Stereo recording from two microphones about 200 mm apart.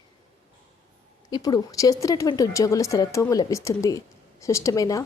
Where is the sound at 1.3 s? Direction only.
20° left (ahead or behind).